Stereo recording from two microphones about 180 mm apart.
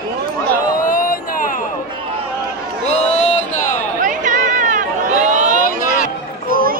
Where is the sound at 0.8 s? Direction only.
50° left (ahead or behind).